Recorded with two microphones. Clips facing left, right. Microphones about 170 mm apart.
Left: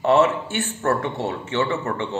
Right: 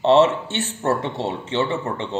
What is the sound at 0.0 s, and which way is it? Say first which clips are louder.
Speech: right 2 dB; 20° right (ahead or behind).